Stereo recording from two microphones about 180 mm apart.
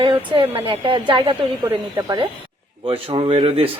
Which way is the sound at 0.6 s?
30° right (ahead or behind).